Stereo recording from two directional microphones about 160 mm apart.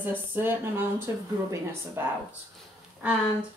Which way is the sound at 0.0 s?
10° right (ahead or behind).